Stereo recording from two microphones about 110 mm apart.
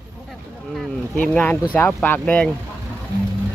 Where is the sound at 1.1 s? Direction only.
10° left (ahead or behind).